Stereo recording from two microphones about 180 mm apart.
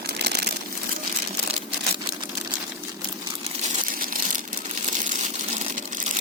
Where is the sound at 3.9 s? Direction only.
50° right (ahead or behind).